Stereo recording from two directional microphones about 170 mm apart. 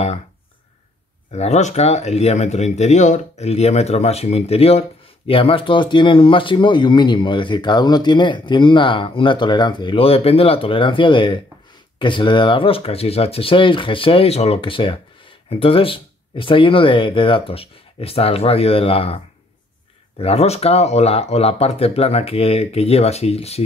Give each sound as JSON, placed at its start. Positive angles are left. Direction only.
{"t": 1.3, "sound": "speech", "side_deg": 40}